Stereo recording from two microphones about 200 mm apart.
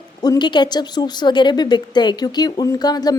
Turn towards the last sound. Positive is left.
turn(degrees=20)  # may be behind; listen again after turning